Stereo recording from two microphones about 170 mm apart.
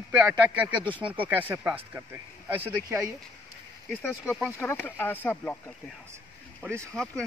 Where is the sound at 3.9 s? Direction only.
10° left (ahead or behind).